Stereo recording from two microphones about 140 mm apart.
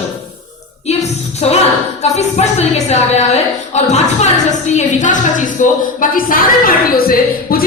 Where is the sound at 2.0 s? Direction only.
50° left (ahead or behind).